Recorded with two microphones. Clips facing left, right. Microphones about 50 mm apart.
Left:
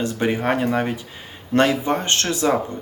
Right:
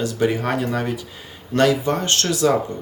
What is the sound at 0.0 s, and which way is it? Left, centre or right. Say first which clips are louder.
Speech: right 1 dB; left.